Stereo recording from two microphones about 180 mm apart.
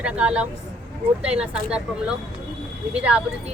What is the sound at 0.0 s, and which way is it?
A woman's voice, 5° right (ahead or behind).